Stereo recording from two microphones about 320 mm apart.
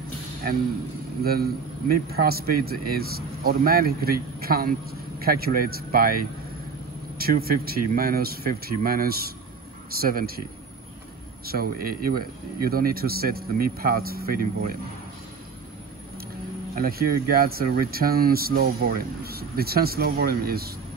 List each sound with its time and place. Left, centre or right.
1.2 s speech: right
11.4 s speech: right
16.7 s speech: right